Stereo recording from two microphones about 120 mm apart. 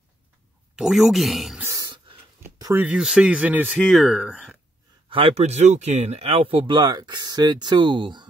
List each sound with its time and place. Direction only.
0.7 s speech: 5° right (ahead or behind)
1.6 s a sound: 25° right (ahead or behind)
2.4 s speech: 20° right (ahead or behind); by 4.6 s centre (ahead or behind)
5.1 s speech: 55° right (ahead or behind)